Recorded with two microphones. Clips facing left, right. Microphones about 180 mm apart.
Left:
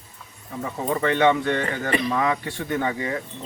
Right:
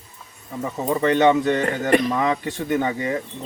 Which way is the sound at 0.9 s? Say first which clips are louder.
Right 3 dB; 15° right (ahead or behind).